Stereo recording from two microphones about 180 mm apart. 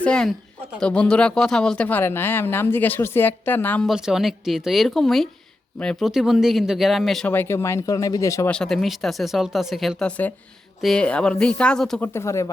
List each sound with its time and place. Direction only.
0.0 s speech: 5° left (ahead or behind)
8.4 s speech: 5° left (ahead or behind)